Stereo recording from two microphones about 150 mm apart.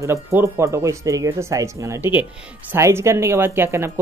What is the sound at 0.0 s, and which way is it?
Speech, 20° right (ahead or behind).